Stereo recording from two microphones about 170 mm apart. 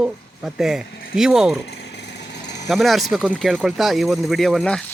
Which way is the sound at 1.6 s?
85° left.